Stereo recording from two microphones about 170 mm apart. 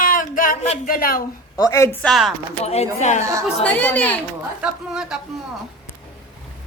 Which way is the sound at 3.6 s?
10° left (ahead or behind).